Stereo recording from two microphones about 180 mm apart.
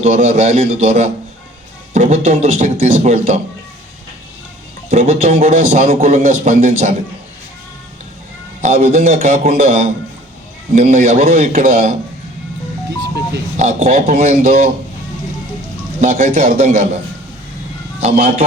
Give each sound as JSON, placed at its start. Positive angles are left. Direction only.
{"t": 0.0, "sound": "a man's voice", "side_deg": -40}
{"t": 4.9, "sound": "a man's voice", "side_deg": -40}
{"t": 8.6, "sound": "a man's voice", "side_deg": -40}
{"t": 13.6, "sound": "a man's voice", "side_deg": -40}
{"t": 16.0, "sound": "a man's voice", "side_deg": -45}
{"t": 18.0, "sound": "a man's voice", "side_deg": -40}